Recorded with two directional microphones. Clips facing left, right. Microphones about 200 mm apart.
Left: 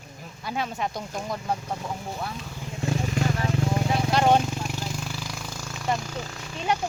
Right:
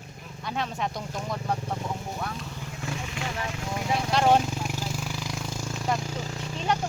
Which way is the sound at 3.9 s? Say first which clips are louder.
Even; centre (ahead or behind).